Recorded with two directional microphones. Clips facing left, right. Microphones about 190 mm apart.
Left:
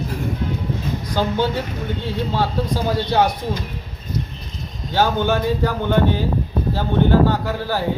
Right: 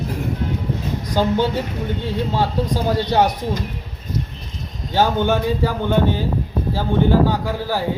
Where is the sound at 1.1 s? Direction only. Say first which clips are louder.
Right 2 dB; 15° right (ahead or behind).